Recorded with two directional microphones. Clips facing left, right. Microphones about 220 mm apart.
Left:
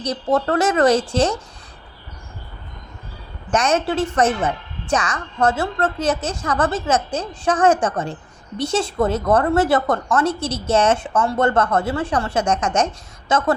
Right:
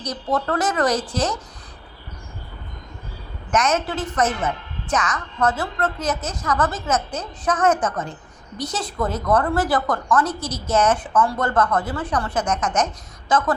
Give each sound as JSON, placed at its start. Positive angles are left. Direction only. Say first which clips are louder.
{"t": 0.0, "sound": "a woman's voice", "louder": "left 4 dB", "side_deg": 25}
{"t": 3.5, "sound": "a woman's voice", "louder": "left 3 dB", "side_deg": 30}